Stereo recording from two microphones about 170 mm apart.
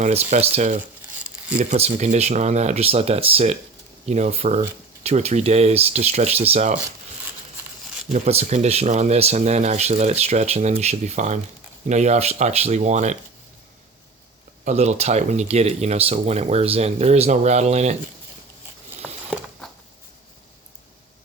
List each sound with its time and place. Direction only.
0.0 s speech: 40° right (ahead or behind)
8.1 s speech: 40° right (ahead or behind)
14.6 s speech: 40° right (ahead or behind)
19.0 s a sound: 5° right (ahead or behind)